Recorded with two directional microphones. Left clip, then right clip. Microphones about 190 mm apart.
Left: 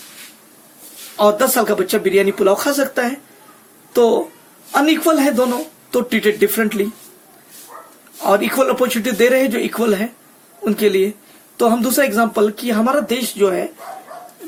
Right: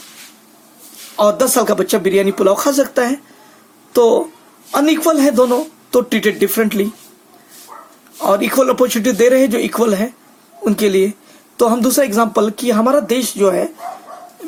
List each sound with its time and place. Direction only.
1.1 s speech: 40° right (ahead or behind)
8.2 s speech: 40° right (ahead or behind)